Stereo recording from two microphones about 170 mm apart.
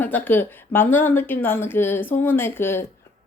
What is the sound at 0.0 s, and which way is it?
Speech, 10° left (ahead or behind).